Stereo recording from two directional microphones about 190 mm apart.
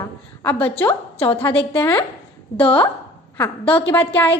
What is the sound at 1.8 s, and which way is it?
A woman's voice, 15° left (ahead or behind).